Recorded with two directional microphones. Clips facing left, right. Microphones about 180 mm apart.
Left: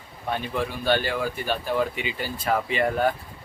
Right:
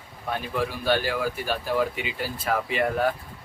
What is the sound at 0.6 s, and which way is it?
Speech, 5° right (ahead or behind).